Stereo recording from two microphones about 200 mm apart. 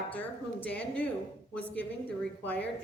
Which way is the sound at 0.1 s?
5° left (ahead or behind).